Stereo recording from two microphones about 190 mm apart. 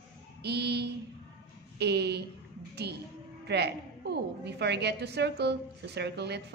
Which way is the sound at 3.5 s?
60° right (ahead or behind).